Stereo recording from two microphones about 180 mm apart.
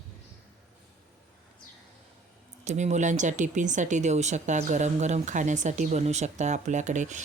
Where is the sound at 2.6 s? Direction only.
40° right (ahead or behind).